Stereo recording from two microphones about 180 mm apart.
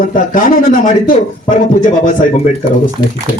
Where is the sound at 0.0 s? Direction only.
50° left (ahead or behind).